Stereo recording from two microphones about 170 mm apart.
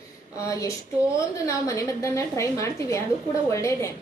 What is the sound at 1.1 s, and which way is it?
A woman's voice, 20° left (ahead or behind).